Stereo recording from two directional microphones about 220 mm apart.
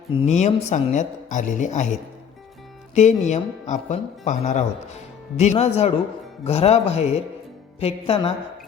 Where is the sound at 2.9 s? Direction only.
30° left (ahead or behind).